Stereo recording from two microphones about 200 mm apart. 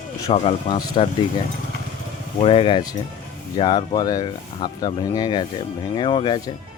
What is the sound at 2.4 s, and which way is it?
Speech, 30° left (ahead or behind).